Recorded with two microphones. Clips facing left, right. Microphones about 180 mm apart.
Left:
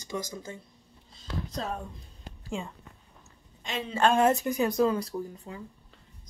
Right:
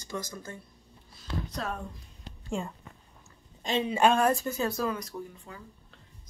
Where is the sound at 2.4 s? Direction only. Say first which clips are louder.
Right 2 dB; centre (ahead or behind).